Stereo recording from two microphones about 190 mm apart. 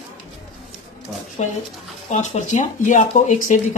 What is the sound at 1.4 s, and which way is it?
Speech, 35° left (ahead or behind).